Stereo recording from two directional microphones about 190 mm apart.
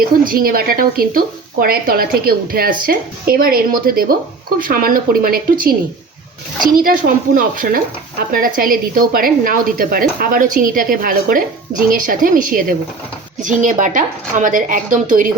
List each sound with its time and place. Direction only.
0.0 s speech: 50° right (ahead or behind)